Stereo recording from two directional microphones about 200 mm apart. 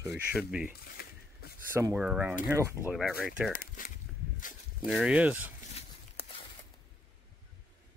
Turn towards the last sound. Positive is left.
turn(degrees=30)  # may be behind; listen again after turning